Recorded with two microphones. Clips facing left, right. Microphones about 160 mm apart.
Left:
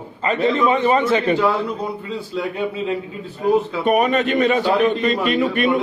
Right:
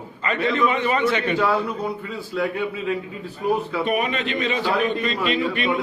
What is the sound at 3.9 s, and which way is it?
A man's voice, 40° left (ahead or behind).